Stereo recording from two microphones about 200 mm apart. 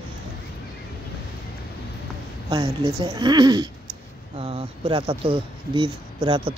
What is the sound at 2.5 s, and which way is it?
A woman's voice, 20° right (ahead or behind).